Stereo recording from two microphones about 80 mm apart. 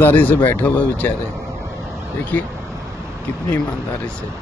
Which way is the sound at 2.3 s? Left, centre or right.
Left.